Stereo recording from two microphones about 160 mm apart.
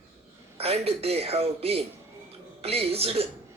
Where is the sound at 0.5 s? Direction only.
40° right (ahead or behind).